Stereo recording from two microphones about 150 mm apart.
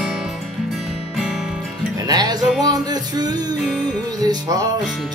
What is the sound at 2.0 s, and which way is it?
Music, 25° right (ahead or behind).